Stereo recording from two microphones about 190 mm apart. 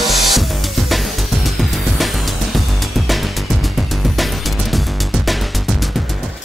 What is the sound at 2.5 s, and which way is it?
Music, centre (ahead or behind).